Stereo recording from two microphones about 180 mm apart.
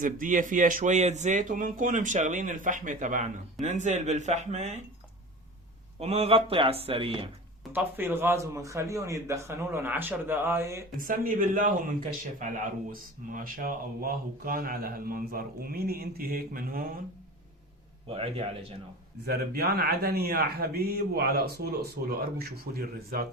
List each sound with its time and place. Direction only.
0.0 s speech: 45° right (ahead or behind)
6.0 s speech: 35° right (ahead or behind)
7.7 s a man's voice: 10° right (ahead or behind)
11.0 s speech: 50° right (ahead or behind)
12.9 s speech: 50° right (ahead or behind)
18.1 s speech: 35° right (ahead or behind)
19.2 s speech: 60° right (ahead or behind)